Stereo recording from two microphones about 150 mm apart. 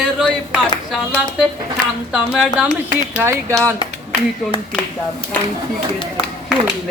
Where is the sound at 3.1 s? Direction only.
15° right (ahead or behind).